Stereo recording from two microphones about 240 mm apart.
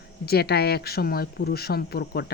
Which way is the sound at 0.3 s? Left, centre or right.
Left.